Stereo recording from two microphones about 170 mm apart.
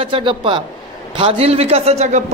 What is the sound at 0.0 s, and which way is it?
A man's voice, 30° right (ahead or behind).